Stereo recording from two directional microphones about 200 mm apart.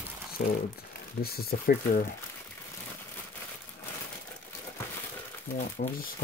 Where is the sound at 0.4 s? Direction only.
55° left (ahead or behind).